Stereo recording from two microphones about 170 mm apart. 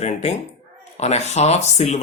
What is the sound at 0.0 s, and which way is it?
Speech, 40° left (ahead or behind).